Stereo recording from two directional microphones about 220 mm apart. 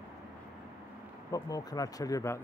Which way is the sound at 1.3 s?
15° left (ahead or behind).